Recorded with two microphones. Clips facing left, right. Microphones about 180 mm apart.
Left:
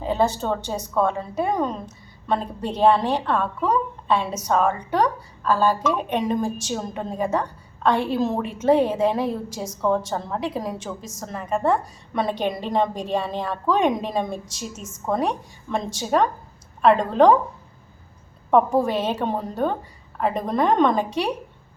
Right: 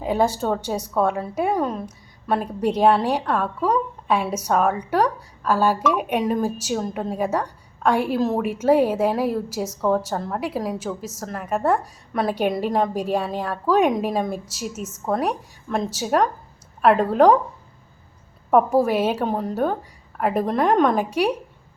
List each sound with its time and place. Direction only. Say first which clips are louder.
0.0 s a woman's voice: right 1 dB; 10° right (ahead or behind)
18.5 s a woman's voice: right 1 dB; 10° right (ahead or behind)